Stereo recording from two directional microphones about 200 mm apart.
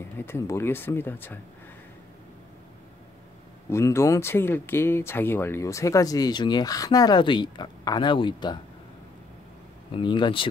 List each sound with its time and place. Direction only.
0.2 s speech: 10° left (ahead or behind)
3.7 s speech: 15° left (ahead or behind)
9.9 s speech: 20° left (ahead or behind)